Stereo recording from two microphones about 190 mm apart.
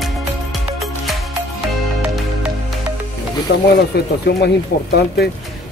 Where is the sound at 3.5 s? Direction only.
60° left (ahead or behind).